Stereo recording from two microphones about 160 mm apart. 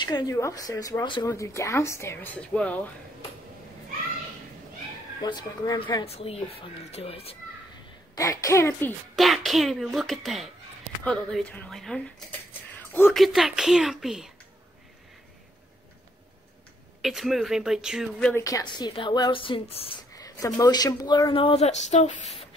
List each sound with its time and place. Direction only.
0.0 s speech: 25° left (ahead or behind); by 2.9 s 10° left (ahead or behind)
5.2 s speech: 25° left (ahead or behind)
8.1 s speech: 20° left (ahead or behind)
9.1 s speech: centre (ahead or behind)
13.1 s speech: centre (ahead or behind)
17.0 s speech: centre (ahead or behind)
18.3 s speech: 20° left (ahead or behind)
20.2 s speech: 20° left (ahead or behind); by 22.5 s 40° left (ahead or behind)